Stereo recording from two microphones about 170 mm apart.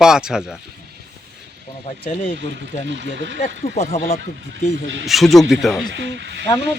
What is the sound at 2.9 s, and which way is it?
Speech, 90° right.